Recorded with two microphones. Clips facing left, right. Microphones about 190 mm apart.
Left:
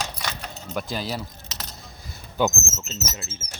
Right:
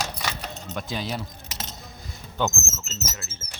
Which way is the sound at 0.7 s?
Centre (ahead or behind).